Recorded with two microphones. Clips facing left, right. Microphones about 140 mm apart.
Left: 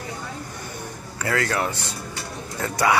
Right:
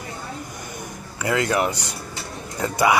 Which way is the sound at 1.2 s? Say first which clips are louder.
Right 3 dB; 15° right (ahead or behind).